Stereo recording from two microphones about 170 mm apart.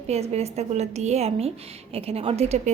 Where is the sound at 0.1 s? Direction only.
40° right (ahead or behind).